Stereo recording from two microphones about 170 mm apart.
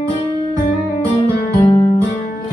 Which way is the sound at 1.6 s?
30° left (ahead or behind).